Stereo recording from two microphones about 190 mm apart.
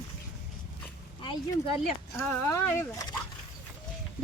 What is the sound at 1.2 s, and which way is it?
Speech, 25° left (ahead or behind).